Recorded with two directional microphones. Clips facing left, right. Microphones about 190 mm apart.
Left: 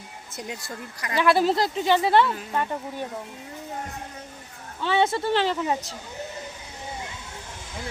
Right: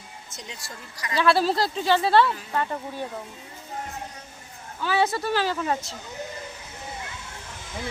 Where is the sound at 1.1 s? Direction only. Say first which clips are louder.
Left 1 dB; 15° left (ahead or behind).